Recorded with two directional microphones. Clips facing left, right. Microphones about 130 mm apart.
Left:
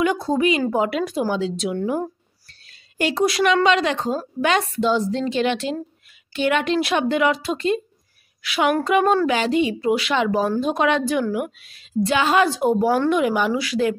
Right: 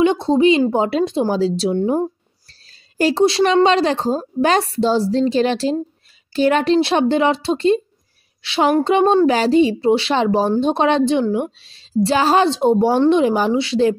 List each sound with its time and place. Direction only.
0.0 s a woman's voice: 25° right (ahead or behind)